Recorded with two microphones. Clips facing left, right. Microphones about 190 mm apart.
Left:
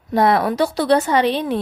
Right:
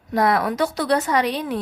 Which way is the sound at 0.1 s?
25° left (ahead or behind).